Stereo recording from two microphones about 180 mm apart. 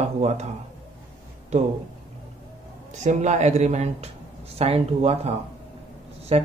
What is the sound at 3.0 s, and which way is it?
Speech, 40° right (ahead or behind).